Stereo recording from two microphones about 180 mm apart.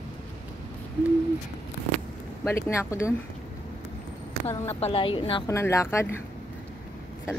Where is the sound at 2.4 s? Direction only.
15° left (ahead or behind).